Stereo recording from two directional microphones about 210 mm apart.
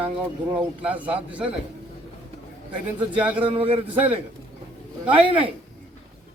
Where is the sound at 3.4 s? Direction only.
25° right (ahead or behind).